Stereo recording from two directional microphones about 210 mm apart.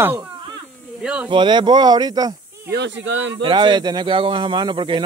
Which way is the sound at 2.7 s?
55° right (ahead or behind).